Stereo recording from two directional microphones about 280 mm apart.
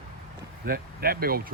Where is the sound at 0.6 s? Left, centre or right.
Right.